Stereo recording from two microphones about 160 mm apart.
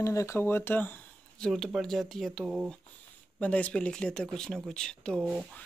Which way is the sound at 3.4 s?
10° left (ahead or behind).